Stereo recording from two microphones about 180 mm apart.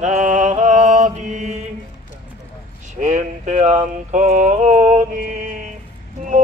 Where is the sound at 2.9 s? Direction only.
45° right (ahead or behind).